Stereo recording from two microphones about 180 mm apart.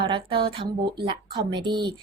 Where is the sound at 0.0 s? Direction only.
30° right (ahead or behind).